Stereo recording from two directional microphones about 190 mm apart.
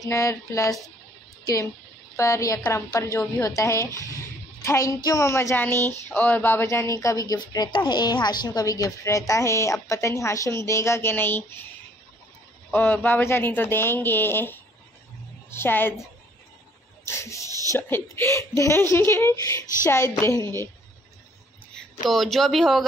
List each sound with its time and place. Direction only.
0.0 s a woman's voice: 15° left (ahead or behind)
12.7 s a woman's voice: 10° left (ahead or behind)
17.0 s a woman's voice: 15° left (ahead or behind)
22.1 s speech: centre (ahead or behind)